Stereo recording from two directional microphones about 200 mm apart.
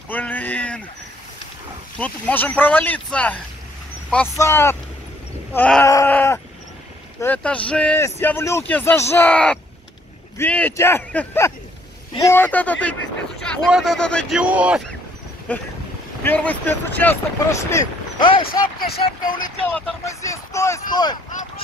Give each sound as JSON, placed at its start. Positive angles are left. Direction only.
{"t": 0.1, "sound": "a sound", "side_deg": 10}
{"t": 2.0, "sound": "speech", "side_deg": 10}
{"t": 5.9, "sound": "groan", "side_deg": 10}
{"t": 7.2, "sound": "speech", "side_deg": 10}
{"t": 14.4, "sound": "speech", "side_deg": -5}
{"t": 15.5, "sound": "speech", "side_deg": 5}
{"t": 18.5, "sound": "speech", "side_deg": 45}
{"t": 19.7, "sound": "speech", "side_deg": 15}